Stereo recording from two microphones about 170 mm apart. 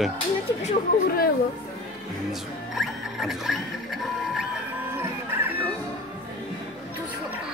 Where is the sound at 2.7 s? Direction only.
Centre (ahead or behind).